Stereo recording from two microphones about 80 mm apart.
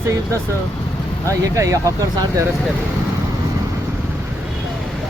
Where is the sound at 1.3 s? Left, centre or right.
Right.